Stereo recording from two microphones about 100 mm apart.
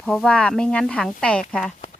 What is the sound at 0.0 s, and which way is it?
Speech, 5° left (ahead or behind).